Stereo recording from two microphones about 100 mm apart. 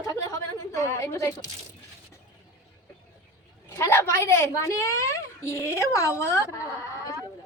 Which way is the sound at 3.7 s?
30° left (ahead or behind).